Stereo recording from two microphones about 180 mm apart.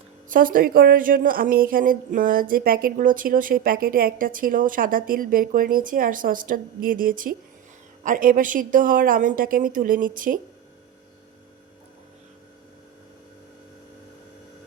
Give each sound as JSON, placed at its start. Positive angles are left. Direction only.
{"t": 0.3, "sound": "a woman's voice", "side_deg": -50}